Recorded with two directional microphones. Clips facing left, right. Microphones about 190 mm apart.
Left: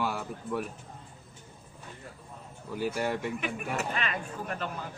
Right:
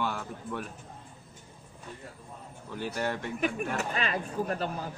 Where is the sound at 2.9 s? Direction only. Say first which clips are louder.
Right 1 dB; 5° left (ahead or behind).